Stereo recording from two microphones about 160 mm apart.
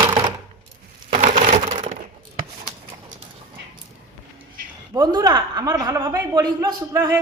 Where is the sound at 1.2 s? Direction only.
50° right (ahead or behind).